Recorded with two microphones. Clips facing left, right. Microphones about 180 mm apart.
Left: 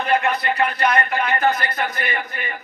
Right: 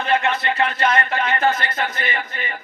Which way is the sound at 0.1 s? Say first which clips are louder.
Even; 25° right (ahead or behind).